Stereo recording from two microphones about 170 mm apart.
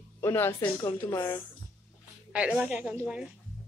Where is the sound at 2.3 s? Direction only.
5° right (ahead or behind).